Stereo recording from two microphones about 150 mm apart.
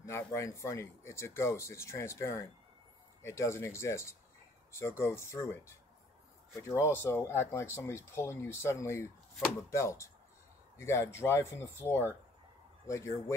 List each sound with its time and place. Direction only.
0.0 s speech: 20° left (ahead or behind)